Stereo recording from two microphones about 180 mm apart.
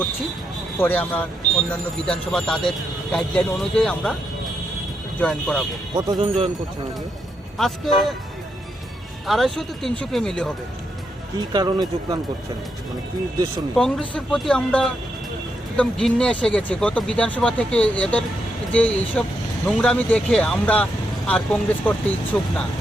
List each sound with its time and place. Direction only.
0.8 s speech: 10° left (ahead or behind)
5.2 s speech: 5° left (ahead or behind)
5.9 s speech: 25° right (ahead or behind)
7.6 s speech: centre (ahead or behind)
9.2 s speech: centre (ahead or behind)
11.3 s speech: 20° right (ahead or behind)
13.7 s speech: centre (ahead or behind)